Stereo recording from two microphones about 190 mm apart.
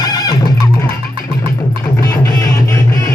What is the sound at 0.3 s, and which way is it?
Music, 20° left (ahead or behind).